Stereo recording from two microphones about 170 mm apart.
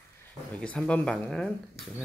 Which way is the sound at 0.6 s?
5° left (ahead or behind).